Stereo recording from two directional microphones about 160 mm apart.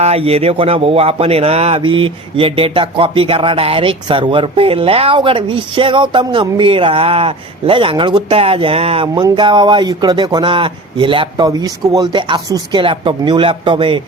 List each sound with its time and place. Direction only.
0.0 s speech: 40° right (ahead or behind)